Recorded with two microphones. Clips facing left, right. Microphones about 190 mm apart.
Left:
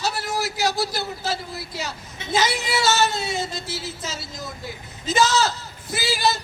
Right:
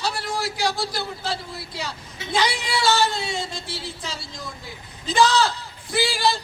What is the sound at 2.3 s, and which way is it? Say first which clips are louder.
Speech: left 1 dB; 20° left (ahead or behind).